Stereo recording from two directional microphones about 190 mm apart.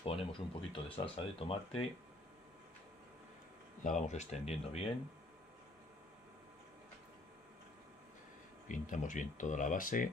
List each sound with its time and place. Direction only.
0.0 s speech: 30° left (ahead or behind)
3.8 s speech: 40° left (ahead or behind)
8.6 s speech: 40° left (ahead or behind)